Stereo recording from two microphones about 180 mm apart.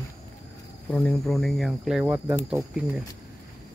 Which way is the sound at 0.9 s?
5° left (ahead or behind).